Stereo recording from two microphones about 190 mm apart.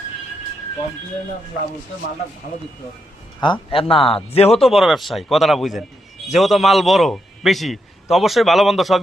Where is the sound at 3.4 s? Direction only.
25° left (ahead or behind).